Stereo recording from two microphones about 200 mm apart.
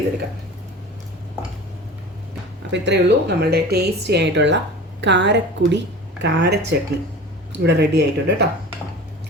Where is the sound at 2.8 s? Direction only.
60° right (ahead or behind).